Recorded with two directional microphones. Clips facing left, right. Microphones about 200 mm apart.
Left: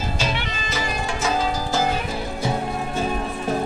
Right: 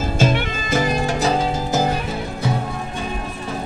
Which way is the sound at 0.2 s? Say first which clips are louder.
Right 7 dB; 50° right (ahead or behind).